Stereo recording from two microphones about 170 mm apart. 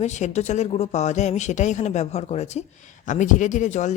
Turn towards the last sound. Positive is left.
turn(degrees=45)  # may be behind; listen again after turning